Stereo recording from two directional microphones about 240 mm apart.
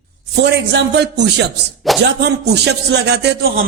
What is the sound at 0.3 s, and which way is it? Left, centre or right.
A man's voice, right.